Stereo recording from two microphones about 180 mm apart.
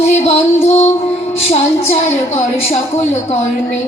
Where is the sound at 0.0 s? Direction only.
35° left (ahead or behind).